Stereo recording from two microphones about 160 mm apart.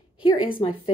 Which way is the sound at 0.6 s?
30° left (ahead or behind).